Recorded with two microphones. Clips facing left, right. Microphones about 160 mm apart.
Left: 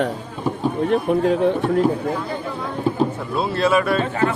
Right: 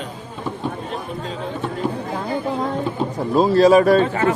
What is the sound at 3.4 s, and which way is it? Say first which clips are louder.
Speech: right 6 dB; 40° right (ahead or behind).